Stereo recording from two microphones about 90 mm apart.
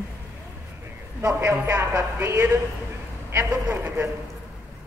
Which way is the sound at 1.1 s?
30° right (ahead or behind).